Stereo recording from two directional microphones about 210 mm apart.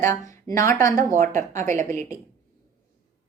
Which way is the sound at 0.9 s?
40° right (ahead or behind).